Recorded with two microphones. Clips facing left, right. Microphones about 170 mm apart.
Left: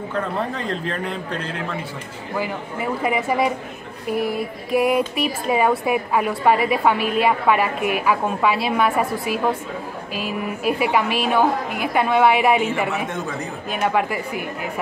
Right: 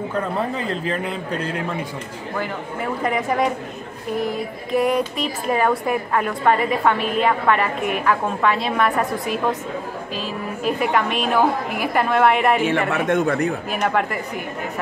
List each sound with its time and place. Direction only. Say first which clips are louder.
0.4 s a woman's voice: right 1 dB; 5° right (ahead or behind)
2.3 s a woman's voice: left 1 dB; 5° left (ahead or behind)
12.6 s a man's voice: right 4 dB; 60° right (ahead or behind)
13.7 s a woman's voice: even; centre (ahead or behind)